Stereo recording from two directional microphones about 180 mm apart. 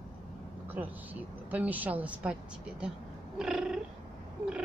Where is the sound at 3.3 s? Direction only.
5° right (ahead or behind).